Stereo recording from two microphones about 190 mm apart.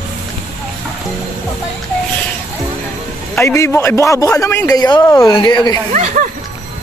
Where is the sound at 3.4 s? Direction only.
15° left (ahead or behind).